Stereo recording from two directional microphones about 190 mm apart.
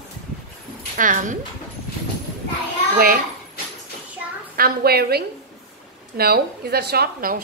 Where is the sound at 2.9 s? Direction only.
50° right (ahead or behind).